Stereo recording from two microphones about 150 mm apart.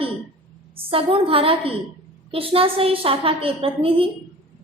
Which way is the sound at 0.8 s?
40° right (ahead or behind).